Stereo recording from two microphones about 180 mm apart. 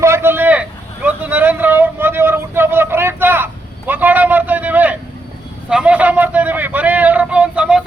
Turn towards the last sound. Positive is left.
turn(degrees=-5)  # may be behind; listen again after turning